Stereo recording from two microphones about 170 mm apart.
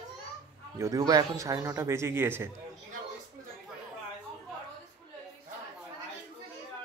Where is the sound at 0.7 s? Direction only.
20° right (ahead or behind).